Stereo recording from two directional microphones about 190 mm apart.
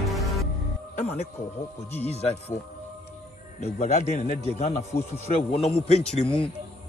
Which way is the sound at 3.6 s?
35° left (ahead or behind).